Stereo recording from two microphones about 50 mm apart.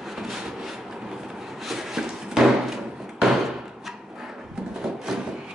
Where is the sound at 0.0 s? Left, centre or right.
Centre.